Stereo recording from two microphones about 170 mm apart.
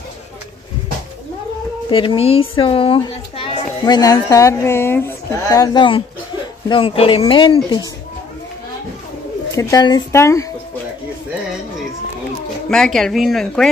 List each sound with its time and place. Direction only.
1.9 s speech: 30° left (ahead or behind)
9.5 s speech: 20° left (ahead or behind)
12.6 s speech: 5° left (ahead or behind)